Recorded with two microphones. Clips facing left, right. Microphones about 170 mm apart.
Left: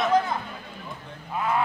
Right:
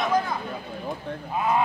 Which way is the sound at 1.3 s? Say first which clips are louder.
Right 2 dB; 20° right (ahead or behind).